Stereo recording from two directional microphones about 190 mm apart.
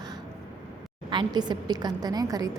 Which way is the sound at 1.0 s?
25° right (ahead or behind).